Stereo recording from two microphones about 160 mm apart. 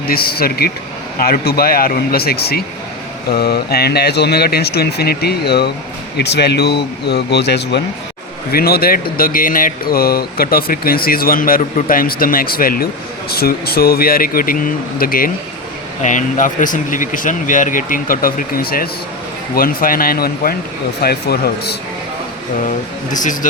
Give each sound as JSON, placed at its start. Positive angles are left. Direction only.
{"t": 0.1, "sound": "speech", "side_deg": 75}
{"t": 8.5, "sound": "speech", "side_deg": 70}
{"t": 16.0, "sound": "speech", "side_deg": 50}
{"t": 23.1, "sound": "speech", "side_deg": 55}